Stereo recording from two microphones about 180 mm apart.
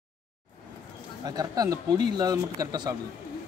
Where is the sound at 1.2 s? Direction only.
20° right (ahead or behind).